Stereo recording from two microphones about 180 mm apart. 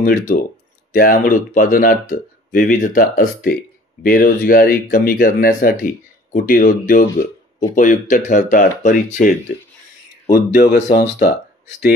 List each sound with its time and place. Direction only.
0.0 s speech: 50° left (ahead or behind)
10.3 s speech: 60° left (ahead or behind)